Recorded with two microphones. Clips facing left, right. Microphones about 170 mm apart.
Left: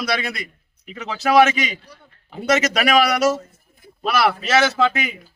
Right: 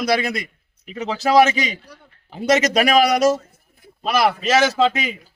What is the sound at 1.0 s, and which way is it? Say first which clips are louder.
Speech: even; 30° right (ahead or behind).